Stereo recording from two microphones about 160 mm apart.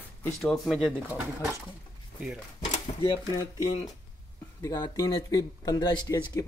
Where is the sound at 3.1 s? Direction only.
25° left (ahead or behind).